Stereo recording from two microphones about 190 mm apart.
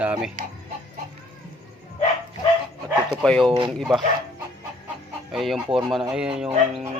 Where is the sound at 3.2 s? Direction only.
Centre (ahead or behind).